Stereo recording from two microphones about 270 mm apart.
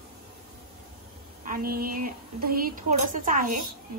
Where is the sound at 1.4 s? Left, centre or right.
Right.